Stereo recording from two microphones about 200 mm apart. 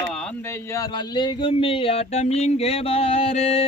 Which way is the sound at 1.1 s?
25° left (ahead or behind).